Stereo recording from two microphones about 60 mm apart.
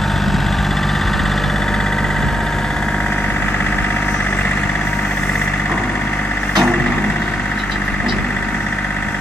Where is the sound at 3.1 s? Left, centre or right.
Left.